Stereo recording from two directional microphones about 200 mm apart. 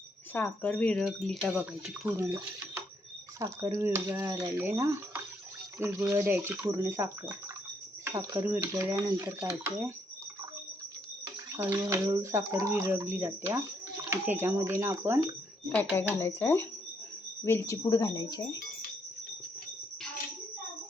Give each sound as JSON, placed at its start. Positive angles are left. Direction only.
{"t": 0.3, "sound": "speech", "side_deg": 10}
{"t": 11.5, "sound": "speech", "side_deg": -15}
{"t": 15.7, "sound": "speech", "side_deg": 10}